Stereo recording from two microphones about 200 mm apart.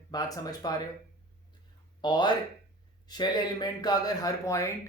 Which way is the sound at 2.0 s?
20° left (ahead or behind).